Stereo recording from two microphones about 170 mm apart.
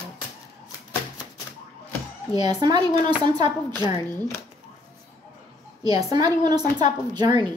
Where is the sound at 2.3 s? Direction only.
25° right (ahead or behind).